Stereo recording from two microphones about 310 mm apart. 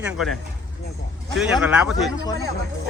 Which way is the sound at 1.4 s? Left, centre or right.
Centre.